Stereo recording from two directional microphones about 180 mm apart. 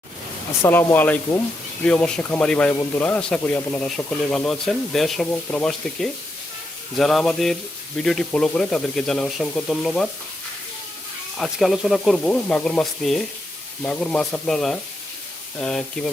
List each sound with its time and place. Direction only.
0.6 s speech: 10° left (ahead or behind)
11.3 s speech: centre (ahead or behind)